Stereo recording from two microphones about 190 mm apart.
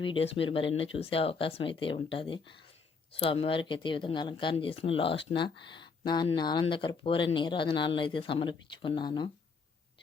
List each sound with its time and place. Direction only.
0.0 s speech: 30° left (ahead or behind)